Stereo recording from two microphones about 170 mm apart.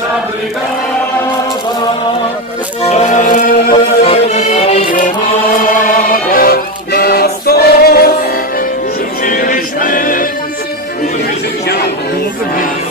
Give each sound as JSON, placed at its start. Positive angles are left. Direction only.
{"t": 2.8, "sound": "music", "side_deg": 40}
{"t": 3.7, "sound": "music", "side_deg": 35}
{"t": 9.2, "sound": "music", "side_deg": 50}